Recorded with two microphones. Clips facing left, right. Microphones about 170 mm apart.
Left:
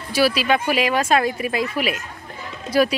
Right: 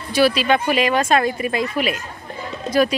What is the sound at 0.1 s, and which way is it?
Speech, 5° left (ahead or behind).